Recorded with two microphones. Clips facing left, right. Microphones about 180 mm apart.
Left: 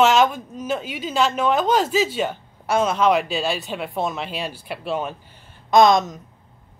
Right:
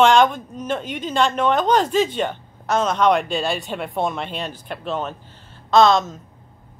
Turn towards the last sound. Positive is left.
turn(degrees=15)  # may be behind; listen again after turning